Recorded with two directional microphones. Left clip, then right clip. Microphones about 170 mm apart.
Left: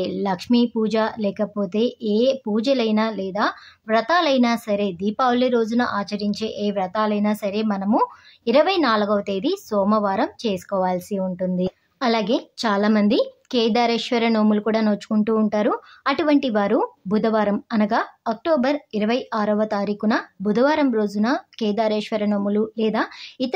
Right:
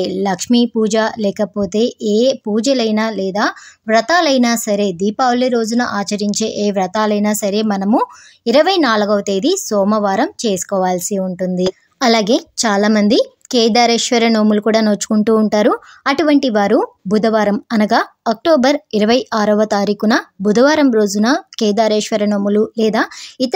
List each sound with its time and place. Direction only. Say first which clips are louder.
0.0 s a woman's voice: right 6 dB; 35° right (ahead or behind)